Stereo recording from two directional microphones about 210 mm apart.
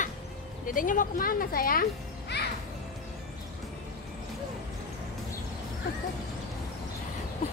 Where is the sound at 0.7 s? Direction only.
40° left (ahead or behind).